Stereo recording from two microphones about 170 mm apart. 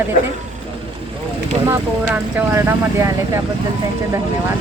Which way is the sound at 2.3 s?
15° right (ahead or behind).